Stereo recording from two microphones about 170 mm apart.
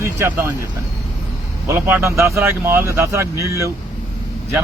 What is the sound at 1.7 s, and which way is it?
Speech, 15° right (ahead or behind).